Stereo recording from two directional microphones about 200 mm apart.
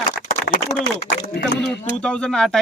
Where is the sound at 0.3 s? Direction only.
45° left (ahead or behind).